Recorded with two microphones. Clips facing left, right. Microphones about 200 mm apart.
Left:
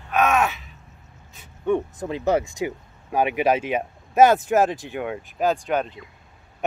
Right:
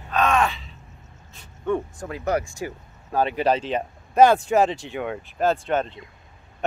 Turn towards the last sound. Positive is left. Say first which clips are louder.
# even
turn(degrees=5)  # may be behind; listen again after turning